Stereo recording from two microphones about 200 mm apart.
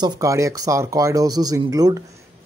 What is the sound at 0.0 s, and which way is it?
Speech, 15° right (ahead or behind).